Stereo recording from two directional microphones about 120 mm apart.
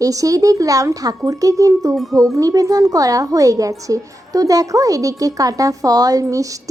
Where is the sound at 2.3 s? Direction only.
30° right (ahead or behind).